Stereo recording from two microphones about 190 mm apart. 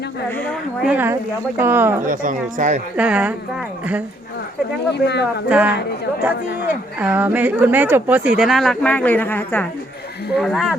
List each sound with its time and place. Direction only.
0.8 s speech: 10° right (ahead or behind)
2.0 s speech: 45° right (ahead or behind)
3.0 s speech: 5° right (ahead or behind)
4.9 s speech: 65° left (ahead or behind)
5.2 s speech: 5° right (ahead or behind)
7.0 s speech: 10° right (ahead or behind)